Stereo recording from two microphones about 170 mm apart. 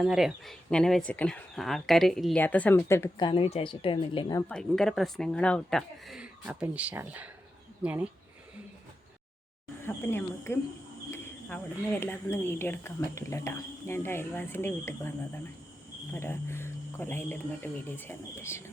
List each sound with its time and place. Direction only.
0.0 s speech: 5° right (ahead or behind); by 3.1 s 15° left (ahead or behind)
3.2 s a woman's voice: 30° left (ahead or behind)
4.4 s speech: 5° left (ahead or behind)
9.8 s speech: 15° left (ahead or behind)
16.1 s speech: 15° left (ahead or behind)